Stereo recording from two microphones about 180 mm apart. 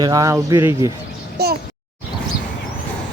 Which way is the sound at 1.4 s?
65° right (ahead or behind).